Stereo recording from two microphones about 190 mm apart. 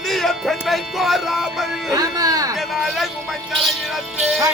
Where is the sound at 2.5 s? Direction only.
Centre (ahead or behind).